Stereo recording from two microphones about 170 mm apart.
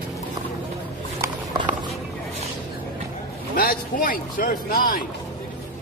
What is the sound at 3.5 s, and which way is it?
Speech, 55° left (ahead or behind).